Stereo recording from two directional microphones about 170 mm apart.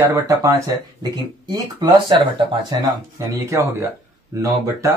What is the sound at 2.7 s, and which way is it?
Speech, 25° right (ahead or behind).